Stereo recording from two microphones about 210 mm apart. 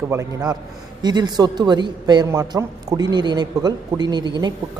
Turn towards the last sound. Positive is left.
turn(degrees=-20)  # may be behind; listen again after turning